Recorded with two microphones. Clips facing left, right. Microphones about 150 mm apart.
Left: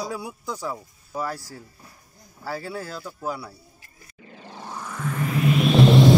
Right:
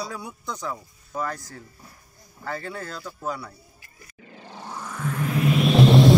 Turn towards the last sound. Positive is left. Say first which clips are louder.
# even
turn(degrees=0)  # may be behind; listen again after turning